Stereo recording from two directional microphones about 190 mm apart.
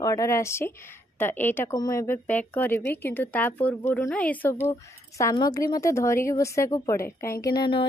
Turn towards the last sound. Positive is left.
turn(degrees=25)  # may be behind; listen again after turning